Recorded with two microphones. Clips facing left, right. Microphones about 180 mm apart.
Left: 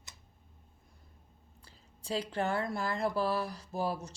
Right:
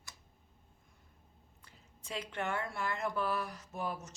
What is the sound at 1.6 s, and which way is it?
Speech, 35° left (ahead or behind).